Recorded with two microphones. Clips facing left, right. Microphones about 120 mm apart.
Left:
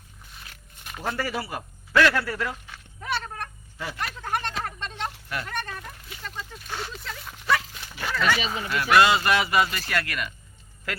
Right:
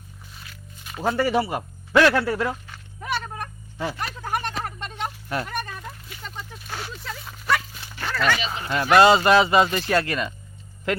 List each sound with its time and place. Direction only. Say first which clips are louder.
1.0 s speech: right 8 dB; 20° right (ahead or behind)
2.7 s a sound: right 2 dB; centre (ahead or behind)
6.7 s dog: right 1 dB; 5° right (ahead or behind)
8.7 s a man's voice: right 4 dB; 30° right (ahead or behind)